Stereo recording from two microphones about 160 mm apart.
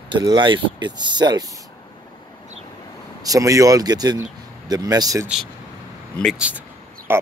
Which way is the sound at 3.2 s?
20° right (ahead or behind).